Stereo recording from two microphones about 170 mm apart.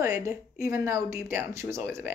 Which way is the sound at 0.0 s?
15° right (ahead or behind).